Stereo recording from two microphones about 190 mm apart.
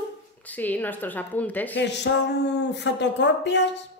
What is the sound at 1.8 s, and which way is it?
Speech, 65° left (ahead or behind).